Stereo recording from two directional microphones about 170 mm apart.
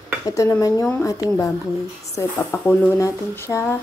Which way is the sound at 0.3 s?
20° left (ahead or behind).